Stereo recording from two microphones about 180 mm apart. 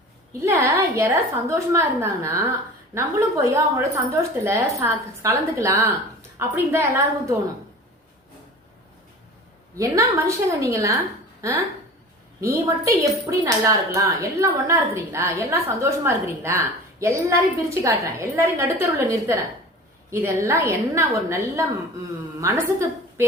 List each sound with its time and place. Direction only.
0.4 s speech: 15° right (ahead or behind)
9.7 s speech: 20° right (ahead or behind)
12.4 s a woman's voice: 15° right (ahead or behind)